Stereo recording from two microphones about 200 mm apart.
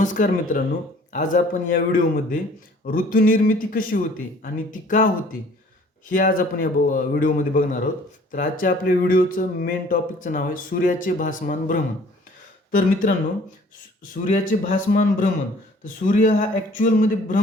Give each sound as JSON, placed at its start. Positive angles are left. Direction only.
{"t": 0.0, "sound": "speech", "side_deg": 40}
{"t": 14.3, "sound": "speech", "side_deg": 40}